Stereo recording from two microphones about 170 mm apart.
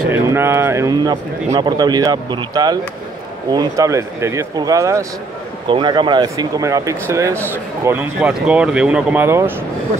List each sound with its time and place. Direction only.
0.1 s speech: 15° right (ahead or behind)